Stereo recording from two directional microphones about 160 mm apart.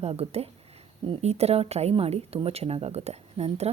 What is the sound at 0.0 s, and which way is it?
A woman's voice, 40° right (ahead or behind).